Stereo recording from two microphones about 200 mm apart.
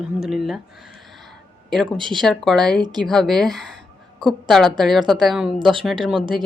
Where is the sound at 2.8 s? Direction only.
20° right (ahead or behind).